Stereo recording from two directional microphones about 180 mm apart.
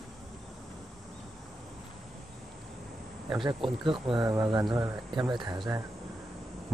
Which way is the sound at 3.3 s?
25° right (ahead or behind).